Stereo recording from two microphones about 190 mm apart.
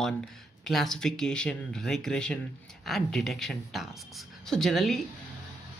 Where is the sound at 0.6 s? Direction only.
Centre (ahead or behind).